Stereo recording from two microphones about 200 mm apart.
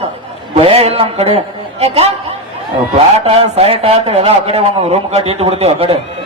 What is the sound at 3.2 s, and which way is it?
A man's voice, 30° right (ahead or behind).